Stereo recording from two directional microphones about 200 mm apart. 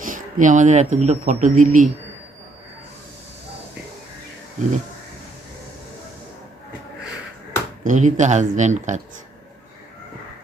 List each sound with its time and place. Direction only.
0.0 s speech: 40° right (ahead or behind)
7.9 s speech: 40° right (ahead or behind)